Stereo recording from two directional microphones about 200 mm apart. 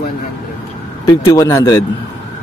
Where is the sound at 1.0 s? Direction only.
15° left (ahead or behind).